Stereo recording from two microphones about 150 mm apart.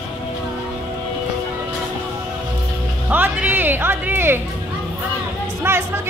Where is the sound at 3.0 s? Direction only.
10° right (ahead or behind).